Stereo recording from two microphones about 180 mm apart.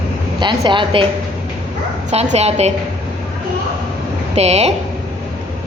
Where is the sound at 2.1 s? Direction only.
35° right (ahead or behind).